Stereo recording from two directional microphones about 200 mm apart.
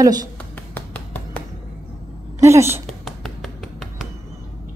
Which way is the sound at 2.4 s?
15° right (ahead or behind).